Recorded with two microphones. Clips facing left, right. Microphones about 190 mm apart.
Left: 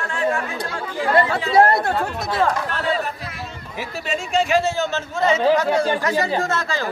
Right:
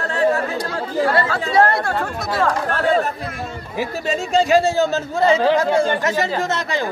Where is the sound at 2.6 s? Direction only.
45° right (ahead or behind).